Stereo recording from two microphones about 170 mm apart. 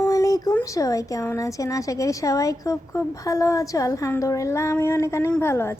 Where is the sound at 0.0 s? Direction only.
20° left (ahead or behind).